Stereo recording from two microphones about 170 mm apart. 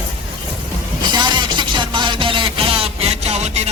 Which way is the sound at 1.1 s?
25° right (ahead or behind).